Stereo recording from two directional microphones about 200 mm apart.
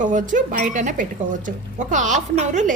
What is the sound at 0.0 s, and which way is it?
Speech, 40° right (ahead or behind).